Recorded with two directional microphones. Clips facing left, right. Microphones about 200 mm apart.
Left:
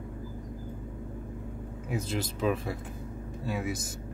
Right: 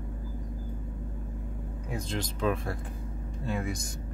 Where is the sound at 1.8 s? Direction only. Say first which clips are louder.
Left 2 dB; 5° left (ahead or behind).